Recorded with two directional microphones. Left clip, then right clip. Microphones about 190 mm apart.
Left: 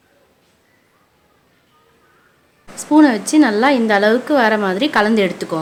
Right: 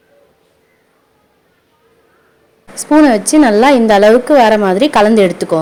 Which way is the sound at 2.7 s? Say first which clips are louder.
Right 4 dB; 25° right (ahead or behind).